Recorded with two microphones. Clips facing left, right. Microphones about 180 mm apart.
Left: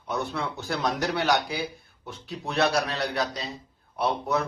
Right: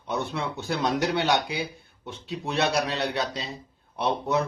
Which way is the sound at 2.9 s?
25° right (ahead or behind).